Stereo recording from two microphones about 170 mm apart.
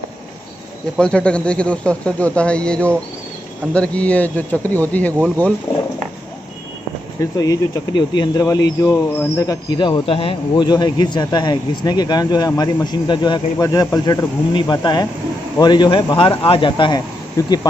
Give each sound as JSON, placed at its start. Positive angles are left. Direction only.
{"t": 0.9, "sound": "speech", "side_deg": 5}
{"t": 7.2, "sound": "speech", "side_deg": 20}